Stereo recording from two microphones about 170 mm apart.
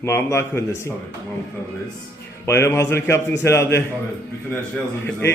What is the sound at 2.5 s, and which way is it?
Speech, 15° left (ahead or behind).